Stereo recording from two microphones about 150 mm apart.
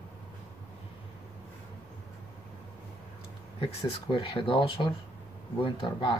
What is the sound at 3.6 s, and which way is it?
Speech, 35° left (ahead or behind).